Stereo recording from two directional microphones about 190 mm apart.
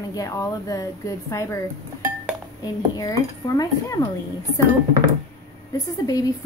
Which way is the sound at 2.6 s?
20° left (ahead or behind).